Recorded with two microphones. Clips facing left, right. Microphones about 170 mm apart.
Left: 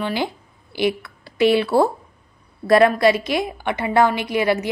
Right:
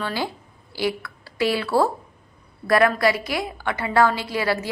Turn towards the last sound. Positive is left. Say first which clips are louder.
# left 4 dB
turn(degrees=20)  # may be behind; listen again after turning